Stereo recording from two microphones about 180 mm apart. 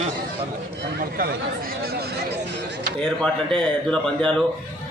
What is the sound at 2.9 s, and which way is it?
Speech, 5° left (ahead or behind).